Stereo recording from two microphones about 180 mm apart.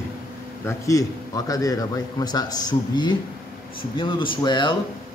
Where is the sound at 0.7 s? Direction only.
20° left (ahead or behind).